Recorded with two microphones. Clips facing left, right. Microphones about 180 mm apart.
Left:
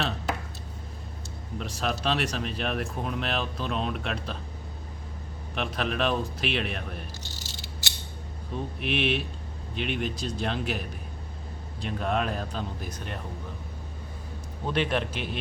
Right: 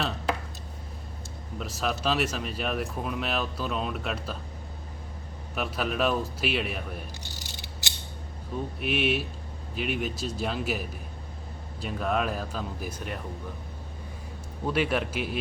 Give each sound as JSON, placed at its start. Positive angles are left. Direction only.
{"t": 1.5, "sound": "speech", "side_deg": 0}
{"t": 5.5, "sound": "speech", "side_deg": -5}
{"t": 7.6, "sound": "mechanisms", "side_deg": -20}
{"t": 8.8, "sound": "speech", "side_deg": -5}
{"t": 14.7, "sound": "a man's voice", "side_deg": -5}